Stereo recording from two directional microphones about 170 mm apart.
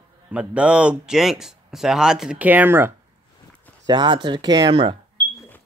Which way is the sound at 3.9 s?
25° right (ahead or behind).